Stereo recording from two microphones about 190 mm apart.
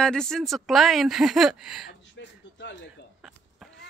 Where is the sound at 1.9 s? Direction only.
70° left (ahead or behind).